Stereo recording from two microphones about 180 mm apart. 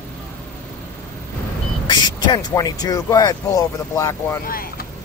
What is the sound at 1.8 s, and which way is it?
Speech, 25° left (ahead or behind).